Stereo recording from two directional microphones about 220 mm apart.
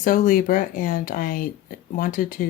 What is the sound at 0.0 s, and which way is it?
Speech, 40° left (ahead or behind).